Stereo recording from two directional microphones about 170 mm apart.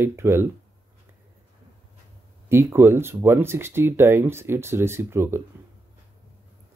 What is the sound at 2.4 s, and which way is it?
Speech, 15° right (ahead or behind).